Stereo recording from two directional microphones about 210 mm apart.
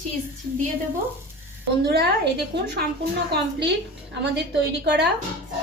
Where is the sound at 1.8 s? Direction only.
50° right (ahead or behind).